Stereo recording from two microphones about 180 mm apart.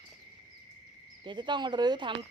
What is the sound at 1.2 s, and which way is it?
Speech, 25° right (ahead or behind).